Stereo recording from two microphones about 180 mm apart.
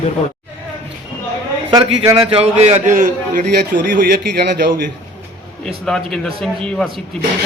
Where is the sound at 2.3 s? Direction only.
35° right (ahead or behind); by 4.8 s 55° right (ahead or behind).